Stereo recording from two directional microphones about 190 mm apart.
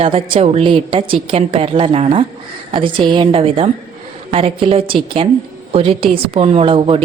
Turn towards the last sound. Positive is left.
turn(degrees=-30)  # may be behind; listen again after turning